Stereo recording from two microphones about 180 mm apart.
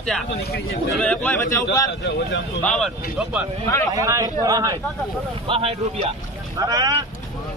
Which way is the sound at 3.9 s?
20° right (ahead or behind).